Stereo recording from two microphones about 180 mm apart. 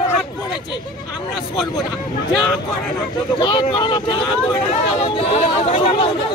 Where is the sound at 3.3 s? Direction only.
25° left (ahead or behind).